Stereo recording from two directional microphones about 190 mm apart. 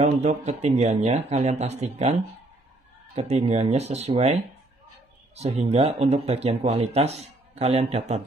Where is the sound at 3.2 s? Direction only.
35° right (ahead or behind).